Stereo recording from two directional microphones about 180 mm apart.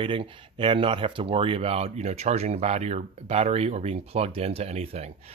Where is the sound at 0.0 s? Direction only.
30° right (ahead or behind).